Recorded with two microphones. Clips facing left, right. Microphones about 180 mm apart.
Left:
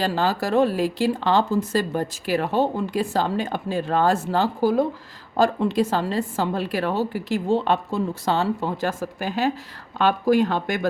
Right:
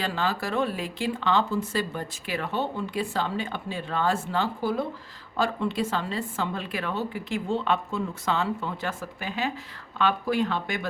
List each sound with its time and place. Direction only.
0.0 s speech: 35° left (ahead or behind)